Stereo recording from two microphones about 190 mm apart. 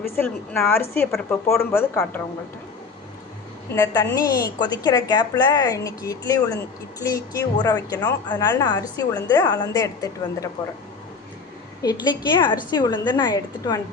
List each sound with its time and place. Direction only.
0.0 s a woman's voice: 5° left (ahead or behind)
3.7 s a woman's voice: 15° left (ahead or behind)
11.8 s a woman's voice: 20° left (ahead or behind)